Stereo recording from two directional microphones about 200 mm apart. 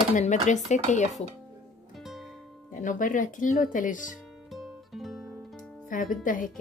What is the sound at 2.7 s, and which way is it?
Speech, 40° left (ahead or behind).